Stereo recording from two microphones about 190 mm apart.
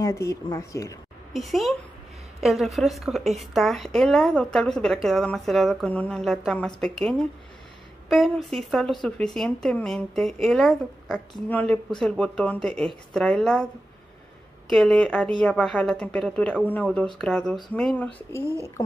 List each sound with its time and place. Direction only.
0.0 s speech: 15° left (ahead or behind)
1.3 s a woman's voice: centre (ahead or behind)
14.7 s a woman's voice: centre (ahead or behind)